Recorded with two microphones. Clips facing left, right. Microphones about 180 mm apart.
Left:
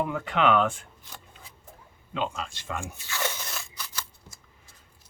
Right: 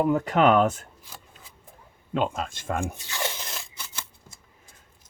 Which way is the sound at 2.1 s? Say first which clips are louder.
Right 5 dB; 50° right (ahead or behind).